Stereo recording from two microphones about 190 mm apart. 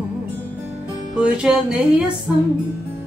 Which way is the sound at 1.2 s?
5° right (ahead or behind).